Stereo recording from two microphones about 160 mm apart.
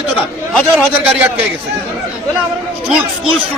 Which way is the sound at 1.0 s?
10° right (ahead or behind).